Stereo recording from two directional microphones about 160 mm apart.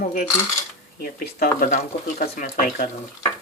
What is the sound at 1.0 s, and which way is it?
Speech, 60° left (ahead or behind).